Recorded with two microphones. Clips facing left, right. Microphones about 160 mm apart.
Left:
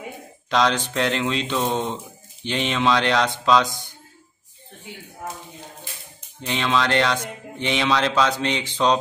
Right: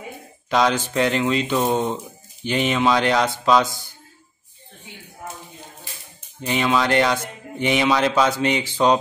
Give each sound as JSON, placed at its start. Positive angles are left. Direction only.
{"t": 0.5, "sound": "speech", "side_deg": -5}
{"t": 6.4, "sound": "speech", "side_deg": -10}